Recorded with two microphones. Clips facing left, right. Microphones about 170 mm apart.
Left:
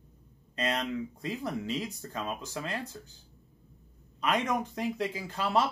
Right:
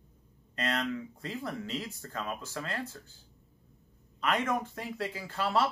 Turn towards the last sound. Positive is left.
turn(degrees=15)  # may be behind; listen again after turning